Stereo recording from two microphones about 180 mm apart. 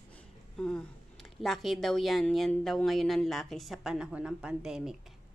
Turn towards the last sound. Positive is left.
turn(degrees=-5)  # may be behind; listen again after turning